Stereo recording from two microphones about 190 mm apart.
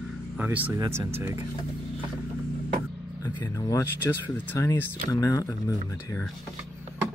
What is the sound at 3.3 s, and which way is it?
Speech, 20° left (ahead or behind).